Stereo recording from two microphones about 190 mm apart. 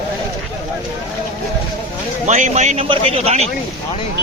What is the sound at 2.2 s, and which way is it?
A man's voice, 40° right (ahead or behind).